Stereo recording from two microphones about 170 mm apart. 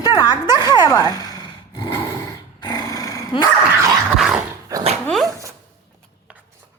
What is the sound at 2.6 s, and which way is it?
Dog, 25° left (ahead or behind).